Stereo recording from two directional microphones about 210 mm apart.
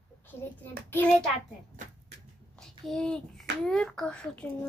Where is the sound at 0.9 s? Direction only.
10° left (ahead or behind).